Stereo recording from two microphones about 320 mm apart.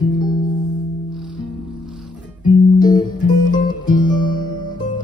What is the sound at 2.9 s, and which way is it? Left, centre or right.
Music, centre.